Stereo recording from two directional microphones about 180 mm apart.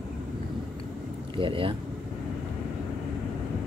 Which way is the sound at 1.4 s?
30° right (ahead or behind).